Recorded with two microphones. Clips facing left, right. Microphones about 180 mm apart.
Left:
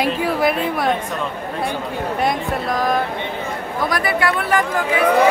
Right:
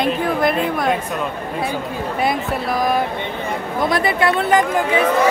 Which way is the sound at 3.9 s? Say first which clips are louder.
Right 2 dB; 25° right (ahead or behind).